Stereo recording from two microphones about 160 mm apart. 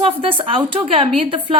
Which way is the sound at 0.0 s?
35° right (ahead or behind).